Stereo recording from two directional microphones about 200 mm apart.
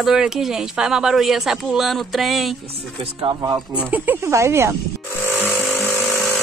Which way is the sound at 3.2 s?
20° right (ahead or behind).